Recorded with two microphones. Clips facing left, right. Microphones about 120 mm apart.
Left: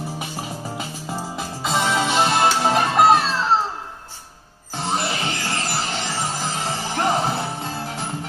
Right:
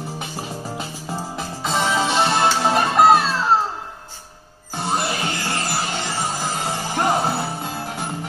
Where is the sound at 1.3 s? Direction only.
Centre (ahead or behind).